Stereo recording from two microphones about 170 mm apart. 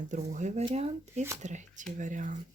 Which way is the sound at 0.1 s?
45° right (ahead or behind).